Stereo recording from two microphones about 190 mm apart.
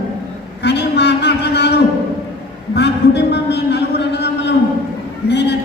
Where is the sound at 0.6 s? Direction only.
60° left (ahead or behind).